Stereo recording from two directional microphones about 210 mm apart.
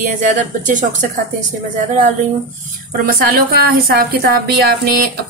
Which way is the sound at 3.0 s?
45° right (ahead or behind).